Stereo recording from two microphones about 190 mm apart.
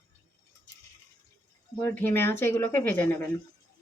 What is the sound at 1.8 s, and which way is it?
Speech, 10° left (ahead or behind).